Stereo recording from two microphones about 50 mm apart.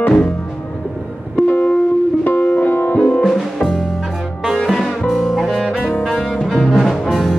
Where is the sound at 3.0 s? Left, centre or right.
Centre.